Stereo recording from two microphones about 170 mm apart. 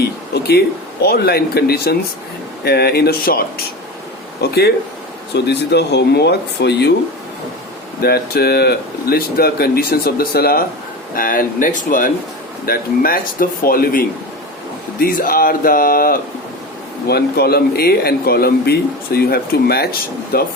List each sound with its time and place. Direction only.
0.0 s music: 70° left (ahead or behind)
1.0 s speech: 65° left (ahead or behind)
5.3 s speech: 80° left
8.0 s speech: 65° left (ahead or behind)